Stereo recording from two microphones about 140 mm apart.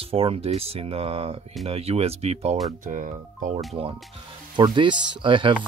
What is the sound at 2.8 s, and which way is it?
Speech, 65° right (ahead or behind).